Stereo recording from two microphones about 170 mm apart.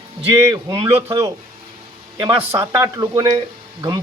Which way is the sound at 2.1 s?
30° right (ahead or behind).